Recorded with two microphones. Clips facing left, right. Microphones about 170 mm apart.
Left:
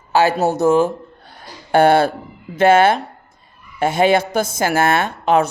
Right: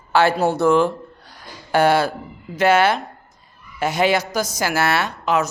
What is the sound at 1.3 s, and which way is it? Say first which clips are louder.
A woman's voice: left 4 dB; 55° left (ahead or behind).